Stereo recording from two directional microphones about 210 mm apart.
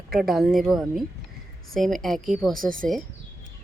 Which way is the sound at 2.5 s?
40° right (ahead or behind).